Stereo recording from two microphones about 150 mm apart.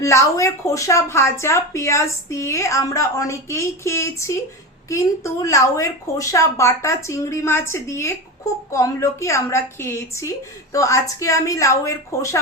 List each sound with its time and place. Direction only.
0.0 s speech: 20° left (ahead or behind)